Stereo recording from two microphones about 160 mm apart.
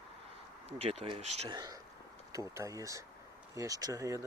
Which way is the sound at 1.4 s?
25° right (ahead or behind).